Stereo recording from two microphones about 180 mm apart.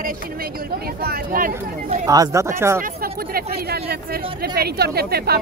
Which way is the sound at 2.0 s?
20° right (ahead or behind).